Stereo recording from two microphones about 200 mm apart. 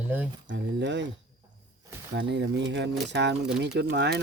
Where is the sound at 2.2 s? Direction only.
60° right (ahead or behind).